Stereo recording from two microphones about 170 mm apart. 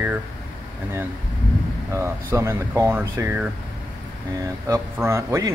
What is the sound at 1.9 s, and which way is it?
A man's voice, 15° right (ahead or behind).